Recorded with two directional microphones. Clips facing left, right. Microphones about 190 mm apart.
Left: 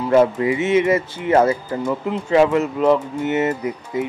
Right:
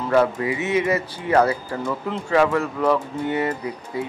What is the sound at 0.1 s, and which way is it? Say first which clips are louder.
Speech: left 4 dB; 25° left (ahead or behind).